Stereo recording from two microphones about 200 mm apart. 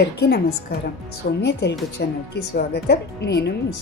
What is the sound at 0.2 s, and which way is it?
A woman's voice, 55° left (ahead or behind).